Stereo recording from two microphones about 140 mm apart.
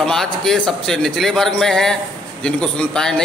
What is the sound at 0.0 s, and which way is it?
A man's voice, 5° left (ahead or behind).